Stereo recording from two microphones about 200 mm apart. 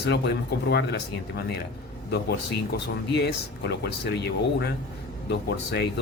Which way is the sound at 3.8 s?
55° left (ahead or behind).